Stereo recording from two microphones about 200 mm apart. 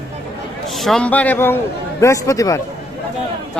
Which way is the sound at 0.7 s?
Centre (ahead or behind).